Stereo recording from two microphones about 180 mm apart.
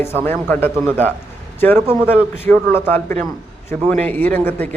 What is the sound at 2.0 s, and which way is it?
Speech, 10° left (ahead or behind).